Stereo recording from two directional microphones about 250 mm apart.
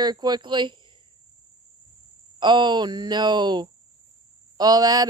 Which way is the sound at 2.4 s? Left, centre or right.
Centre.